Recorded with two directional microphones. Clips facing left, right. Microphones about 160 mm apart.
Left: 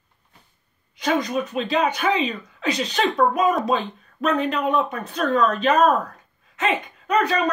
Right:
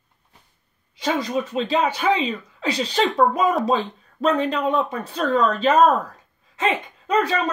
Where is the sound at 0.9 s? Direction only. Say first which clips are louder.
Left 1 dB; 25° right (ahead or behind).